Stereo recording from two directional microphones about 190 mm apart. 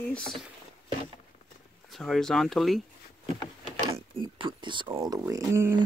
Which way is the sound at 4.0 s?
25° right (ahead or behind).